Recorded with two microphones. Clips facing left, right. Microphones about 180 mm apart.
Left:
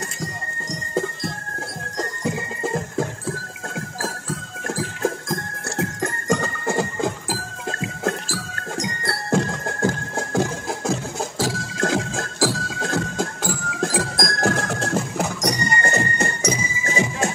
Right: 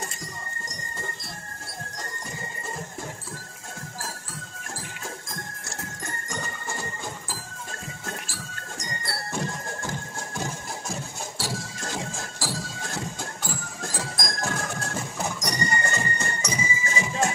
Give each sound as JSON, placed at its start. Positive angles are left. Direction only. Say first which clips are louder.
{"t": 2.0, "sound": "music", "louder": "left 14 dB", "side_deg": 90}
{"t": 4.6, "sound": "music", "louder": "left 15 dB", "side_deg": 85}
{"t": 16.3, "sound": "music", "louder": "left 5 dB", "side_deg": 50}